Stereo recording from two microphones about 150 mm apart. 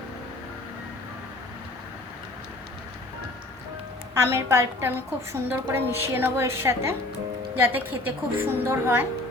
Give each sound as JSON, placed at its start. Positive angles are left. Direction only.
{"t": 4.1, "sound": "a woman's voice", "side_deg": -20}